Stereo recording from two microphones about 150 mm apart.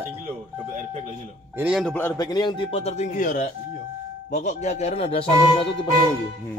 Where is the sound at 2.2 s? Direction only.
30° left (ahead or behind).